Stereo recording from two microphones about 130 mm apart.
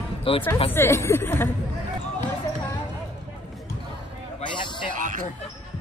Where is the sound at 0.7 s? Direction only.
20° left (ahead or behind).